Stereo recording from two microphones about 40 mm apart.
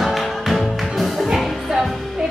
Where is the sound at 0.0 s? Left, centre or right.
Centre.